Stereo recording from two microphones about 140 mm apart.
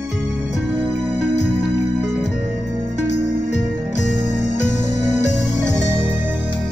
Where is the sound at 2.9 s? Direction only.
55° left (ahead or behind).